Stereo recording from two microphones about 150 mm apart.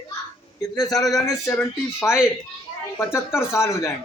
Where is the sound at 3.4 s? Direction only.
20° left (ahead or behind).